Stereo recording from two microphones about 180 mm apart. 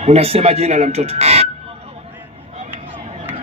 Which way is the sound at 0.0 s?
35° right (ahead or behind).